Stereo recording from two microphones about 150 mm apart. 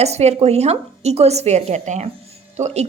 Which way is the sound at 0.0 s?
45° right (ahead or behind).